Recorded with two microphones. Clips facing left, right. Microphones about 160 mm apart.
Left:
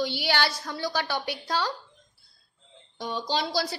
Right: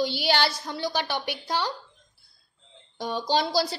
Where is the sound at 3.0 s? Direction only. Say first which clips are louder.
Right 3 dB; 40° right (ahead or behind).